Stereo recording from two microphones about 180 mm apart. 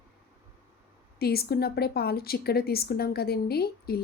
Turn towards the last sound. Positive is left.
turn(degrees=60)  # may be behind; listen again after turning